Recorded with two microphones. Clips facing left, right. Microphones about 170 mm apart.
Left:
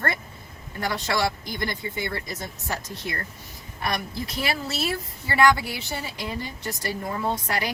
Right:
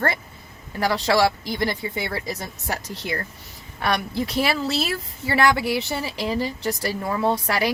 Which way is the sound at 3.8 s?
75° right (ahead or behind).